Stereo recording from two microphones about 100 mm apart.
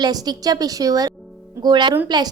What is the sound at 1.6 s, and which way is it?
Speech, 50° right (ahead or behind).